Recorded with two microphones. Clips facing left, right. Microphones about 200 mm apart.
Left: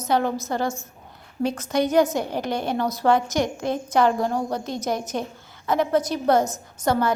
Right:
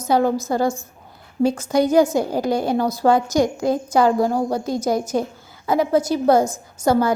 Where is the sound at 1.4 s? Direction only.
30° right (ahead or behind).